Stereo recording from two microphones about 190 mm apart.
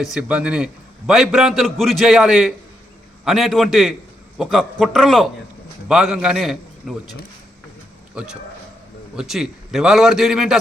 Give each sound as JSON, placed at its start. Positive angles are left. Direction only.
{"t": 0.0, "sound": "a man's voice", "side_deg": -5}
{"t": 9.1, "sound": "a man's voice", "side_deg": 0}